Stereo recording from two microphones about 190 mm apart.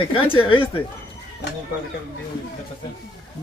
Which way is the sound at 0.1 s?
30° left (ahead or behind).